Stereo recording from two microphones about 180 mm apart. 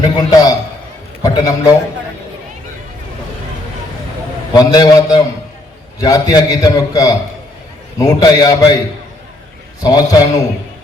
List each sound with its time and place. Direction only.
0.3 s a man's voice: 20° left (ahead or behind)
4.5 s a man's voice: 20° left (ahead or behind)
9.8 s a man's voice: 20° left (ahead or behind)